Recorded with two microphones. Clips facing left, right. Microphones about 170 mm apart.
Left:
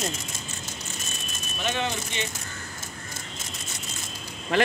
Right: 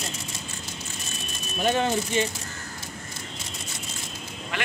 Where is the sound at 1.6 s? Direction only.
40° right (ahead or behind).